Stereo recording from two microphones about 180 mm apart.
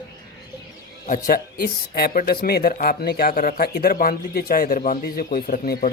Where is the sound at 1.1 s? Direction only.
55° left (ahead or behind).